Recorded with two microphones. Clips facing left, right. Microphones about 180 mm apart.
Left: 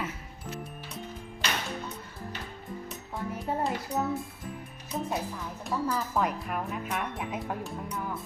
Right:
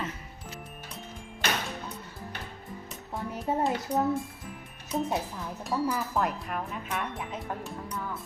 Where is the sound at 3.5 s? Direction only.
20° right (ahead or behind).